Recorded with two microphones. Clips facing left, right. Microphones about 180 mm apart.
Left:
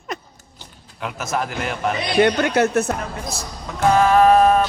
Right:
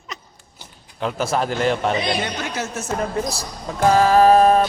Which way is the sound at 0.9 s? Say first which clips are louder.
Right 3 dB; 30° right (ahead or behind).